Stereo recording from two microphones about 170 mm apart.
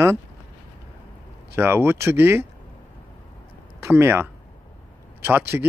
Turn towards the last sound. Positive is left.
turn(degrees=-10)  # may be behind; listen again after turning